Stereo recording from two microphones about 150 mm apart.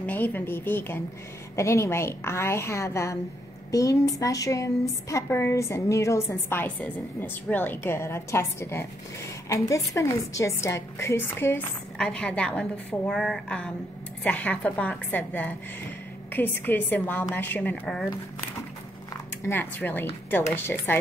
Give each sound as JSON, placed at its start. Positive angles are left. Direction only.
{"t": 0.0, "sound": "a woman's voice", "side_deg": 10}
{"t": 19.4, "sound": "a woman's voice", "side_deg": 15}